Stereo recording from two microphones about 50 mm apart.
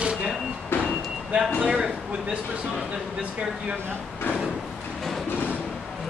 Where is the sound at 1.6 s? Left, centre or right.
Centre.